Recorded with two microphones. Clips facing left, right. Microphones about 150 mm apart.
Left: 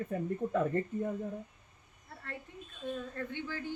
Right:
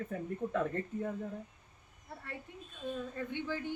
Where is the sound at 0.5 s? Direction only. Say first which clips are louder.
Left 3 dB; 10° left (ahead or behind).